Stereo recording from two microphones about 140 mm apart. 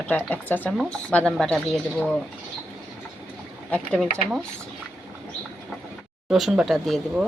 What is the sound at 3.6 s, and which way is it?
Speech, 10° left (ahead or behind).